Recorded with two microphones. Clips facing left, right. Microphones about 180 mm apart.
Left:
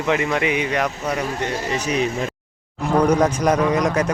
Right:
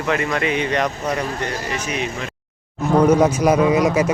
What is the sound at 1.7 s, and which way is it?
Speech, 35° left (ahead or behind).